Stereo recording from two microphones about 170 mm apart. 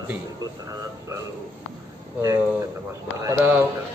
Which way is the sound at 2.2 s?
15° right (ahead or behind).